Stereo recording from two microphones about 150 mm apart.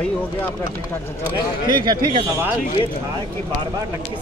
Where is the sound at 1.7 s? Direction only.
30° right (ahead or behind).